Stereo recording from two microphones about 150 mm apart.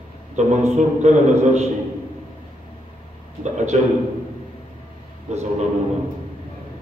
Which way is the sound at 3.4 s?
50° right (ahead or behind).